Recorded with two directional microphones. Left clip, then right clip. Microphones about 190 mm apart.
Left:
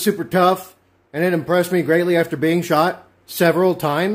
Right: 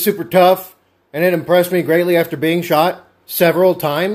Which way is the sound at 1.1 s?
10° left (ahead or behind).